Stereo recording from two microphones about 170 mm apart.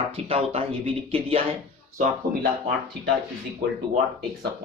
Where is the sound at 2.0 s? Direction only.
55° right (ahead or behind).